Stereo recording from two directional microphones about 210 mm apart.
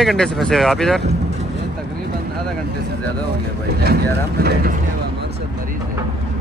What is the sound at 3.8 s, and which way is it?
Speech, 50° right (ahead or behind).